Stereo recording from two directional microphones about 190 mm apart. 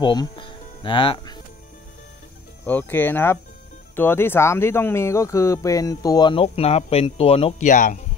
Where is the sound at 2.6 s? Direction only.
10° left (ahead or behind).